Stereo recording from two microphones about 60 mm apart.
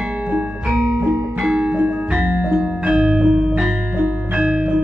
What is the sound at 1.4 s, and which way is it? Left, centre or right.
Music, centre.